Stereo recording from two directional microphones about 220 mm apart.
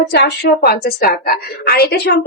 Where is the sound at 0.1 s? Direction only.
50° left (ahead or behind).